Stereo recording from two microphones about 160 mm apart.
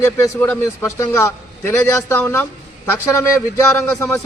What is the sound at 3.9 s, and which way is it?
Speech, 15° left (ahead or behind).